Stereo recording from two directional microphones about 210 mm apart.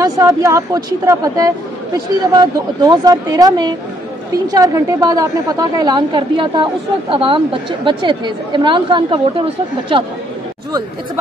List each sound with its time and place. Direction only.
0.0 s a woman's voice: 15° right (ahead or behind)